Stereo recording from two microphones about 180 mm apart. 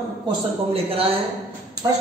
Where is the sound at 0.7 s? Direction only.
30° right (ahead or behind).